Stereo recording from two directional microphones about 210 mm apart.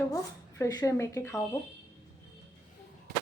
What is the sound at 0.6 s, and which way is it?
Speech, 15° left (ahead or behind).